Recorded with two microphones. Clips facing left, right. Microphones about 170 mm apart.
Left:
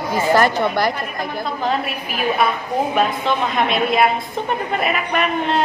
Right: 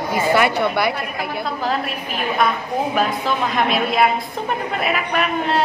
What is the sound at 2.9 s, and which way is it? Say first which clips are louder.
A woman's voice: left 1 dB; centre (ahead or behind).